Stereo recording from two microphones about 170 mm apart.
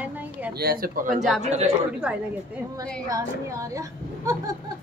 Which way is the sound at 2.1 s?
5° right (ahead or behind).